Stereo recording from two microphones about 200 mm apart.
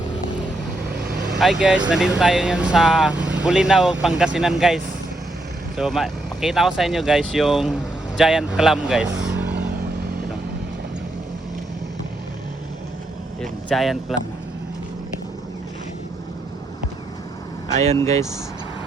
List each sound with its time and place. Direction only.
1.4 s speech: centre (ahead or behind)
13.4 s a sound: centre (ahead or behind)
17.7 s speech: 35° right (ahead or behind)